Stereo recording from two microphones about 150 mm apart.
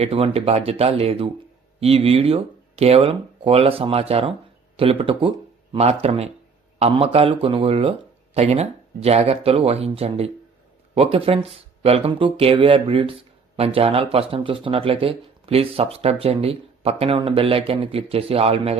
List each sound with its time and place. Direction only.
0.0 s speech: 40° right (ahead or behind)